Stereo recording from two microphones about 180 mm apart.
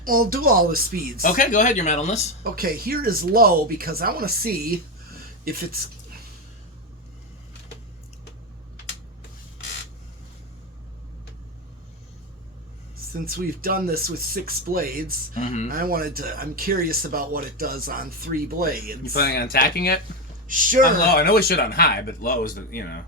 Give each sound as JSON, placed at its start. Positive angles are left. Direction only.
{"t": 0.0, "sound": "speech", "side_deg": -50}
{"t": 1.2, "sound": "speech", "side_deg": 50}
{"t": 2.4, "sound": "speech", "side_deg": -55}
{"t": 13.2, "sound": "speech", "side_deg": -55}
{"t": 15.4, "sound": "speech", "side_deg": 40}
{"t": 15.7, "sound": "speech", "side_deg": -55}
{"t": 19.1, "sound": "speech", "side_deg": 60}
{"t": 20.5, "sound": "speech", "side_deg": -50}
{"t": 20.8, "sound": "speech", "side_deg": 55}